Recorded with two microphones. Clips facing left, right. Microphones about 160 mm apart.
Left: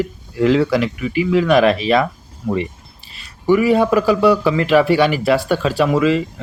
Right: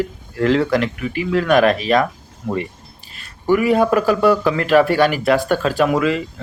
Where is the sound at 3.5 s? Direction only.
Centre (ahead or behind).